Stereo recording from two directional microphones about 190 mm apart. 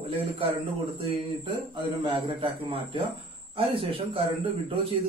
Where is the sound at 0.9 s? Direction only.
25° right (ahead or behind).